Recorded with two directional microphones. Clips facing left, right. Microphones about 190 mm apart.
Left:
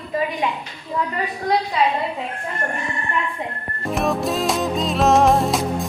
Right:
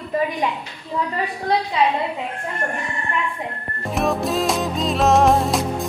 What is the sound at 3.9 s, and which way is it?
Music, centre (ahead or behind).